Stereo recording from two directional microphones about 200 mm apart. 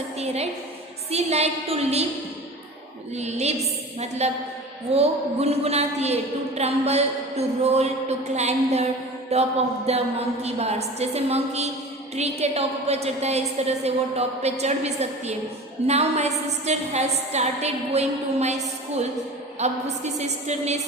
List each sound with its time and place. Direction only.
1.1 s a woman's voice: 30° right (ahead or behind)
3.2 s a woman's voice: 35° right (ahead or behind)
19.6 s a woman's voice: 35° right (ahead or behind)